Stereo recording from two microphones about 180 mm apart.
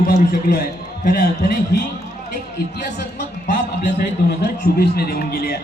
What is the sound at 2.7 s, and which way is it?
Speech, 70° left (ahead or behind).